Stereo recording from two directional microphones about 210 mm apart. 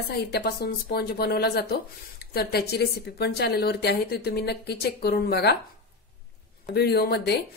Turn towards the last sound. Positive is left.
turn(degrees=50)  # may be behind; listen again after turning